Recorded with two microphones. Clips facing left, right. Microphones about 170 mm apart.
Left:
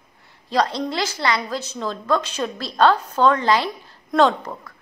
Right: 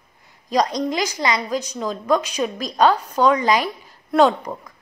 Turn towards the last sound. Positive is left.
turn(degrees=-5)  # may be behind; listen again after turning